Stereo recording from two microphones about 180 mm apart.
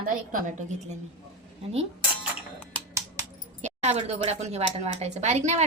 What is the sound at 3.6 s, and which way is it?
Speech, 40° right (ahead or behind).